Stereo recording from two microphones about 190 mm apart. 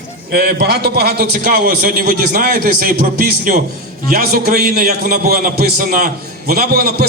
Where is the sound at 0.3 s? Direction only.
55° right (ahead or behind).